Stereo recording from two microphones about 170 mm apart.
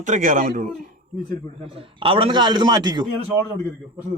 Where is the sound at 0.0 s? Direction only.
50° right (ahead or behind).